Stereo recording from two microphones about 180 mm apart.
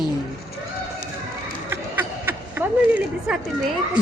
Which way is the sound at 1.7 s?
10° right (ahead or behind).